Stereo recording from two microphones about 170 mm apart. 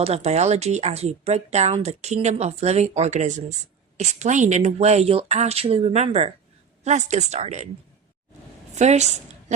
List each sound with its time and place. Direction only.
0.0 s a woman's voice: 40° right (ahead or behind)
8.7 s a woman's voice: 40° right (ahead or behind)